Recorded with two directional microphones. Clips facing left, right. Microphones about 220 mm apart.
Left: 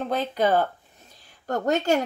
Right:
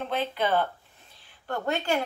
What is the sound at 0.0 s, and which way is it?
A woman's voice, 40° left (ahead or behind).